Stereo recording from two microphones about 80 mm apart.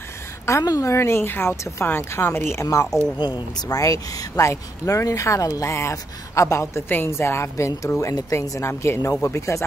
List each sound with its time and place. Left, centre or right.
0.7 s speech: left
3.2 s speech: left
3.6 s speech: left